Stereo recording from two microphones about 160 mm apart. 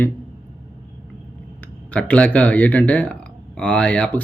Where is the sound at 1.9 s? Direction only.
5° left (ahead or behind).